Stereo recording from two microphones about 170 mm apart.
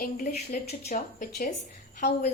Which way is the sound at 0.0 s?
55° left (ahead or behind).